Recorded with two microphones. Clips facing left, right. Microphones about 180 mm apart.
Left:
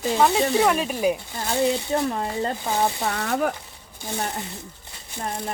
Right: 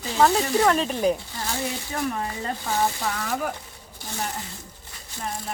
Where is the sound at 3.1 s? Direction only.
60° left (ahead or behind).